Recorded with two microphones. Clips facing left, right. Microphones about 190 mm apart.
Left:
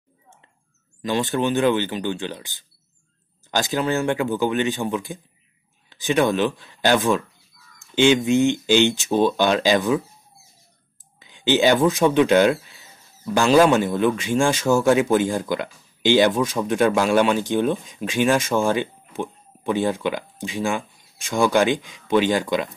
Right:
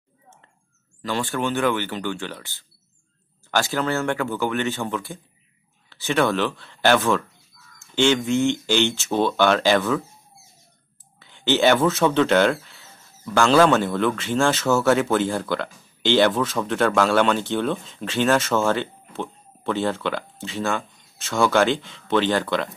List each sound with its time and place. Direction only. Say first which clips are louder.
1.0 s speech: left 3 dB; 20° left (ahead or behind)
11.1 s speech: left 2 dB; 15° left (ahead or behind)